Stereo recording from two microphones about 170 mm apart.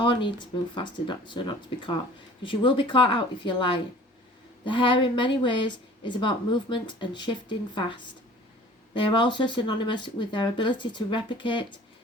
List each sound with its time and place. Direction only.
0.0 s speech: 25° left (ahead or behind)
9.0 s speech: 30° left (ahead or behind)